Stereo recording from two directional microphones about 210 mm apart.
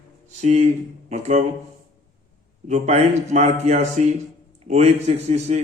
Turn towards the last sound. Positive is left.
turn(degrees=-30)  # may be behind; listen again after turning